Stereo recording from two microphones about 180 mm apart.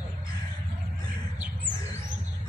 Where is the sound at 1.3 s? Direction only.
10° right (ahead or behind).